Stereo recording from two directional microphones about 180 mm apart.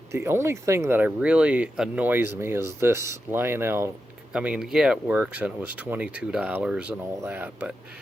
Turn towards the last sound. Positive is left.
turn(degrees=-10)  # may be behind; listen again after turning